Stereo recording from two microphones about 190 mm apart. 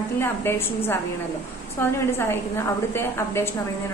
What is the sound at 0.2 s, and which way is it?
A woman's voice, 10° left (ahead or behind).